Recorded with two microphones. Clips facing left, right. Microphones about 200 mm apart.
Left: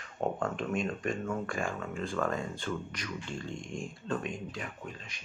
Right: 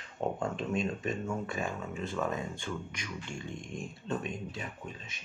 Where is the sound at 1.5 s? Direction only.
20° right (ahead or behind).